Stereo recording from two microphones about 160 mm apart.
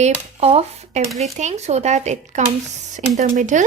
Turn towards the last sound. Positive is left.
turn(degrees=-55)  # may be behind; listen again after turning